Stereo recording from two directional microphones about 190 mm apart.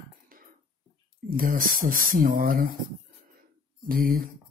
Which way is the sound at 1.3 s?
50° right (ahead or behind).